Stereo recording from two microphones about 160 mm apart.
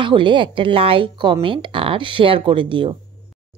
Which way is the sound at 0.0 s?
30° right (ahead or behind).